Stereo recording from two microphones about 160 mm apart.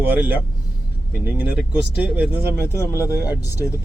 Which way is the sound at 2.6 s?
15° left (ahead or behind).